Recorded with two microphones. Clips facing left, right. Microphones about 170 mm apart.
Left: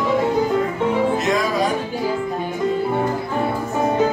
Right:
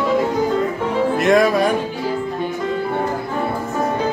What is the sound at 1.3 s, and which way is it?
Music, 60° right (ahead or behind).